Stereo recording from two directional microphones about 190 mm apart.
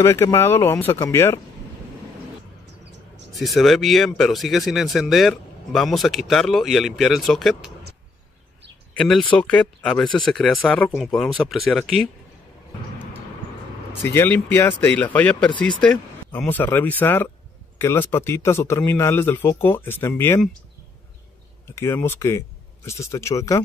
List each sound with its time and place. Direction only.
0.0 s speech: 15° left (ahead or behind)
3.3 s speech: centre (ahead or behind)
8.9 s speech: centre (ahead or behind)
14.1 s speech: 10° left (ahead or behind)
21.7 s speech: 15° left (ahead or behind)